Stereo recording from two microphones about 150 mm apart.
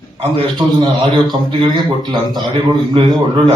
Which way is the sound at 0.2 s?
35° right (ahead or behind).